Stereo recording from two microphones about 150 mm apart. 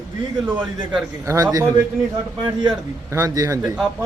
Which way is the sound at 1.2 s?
20° right (ahead or behind).